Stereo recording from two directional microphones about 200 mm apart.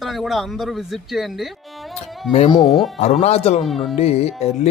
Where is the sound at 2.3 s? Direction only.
30° left (ahead or behind).